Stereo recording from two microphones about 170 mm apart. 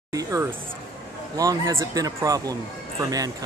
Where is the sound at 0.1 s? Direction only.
20° right (ahead or behind).